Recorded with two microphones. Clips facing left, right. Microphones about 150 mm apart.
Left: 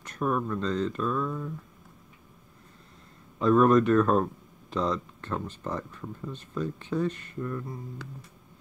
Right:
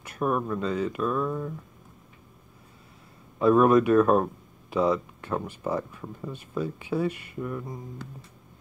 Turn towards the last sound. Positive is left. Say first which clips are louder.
# right 1 dB
turn(degrees=-10)  # may be behind; listen again after turning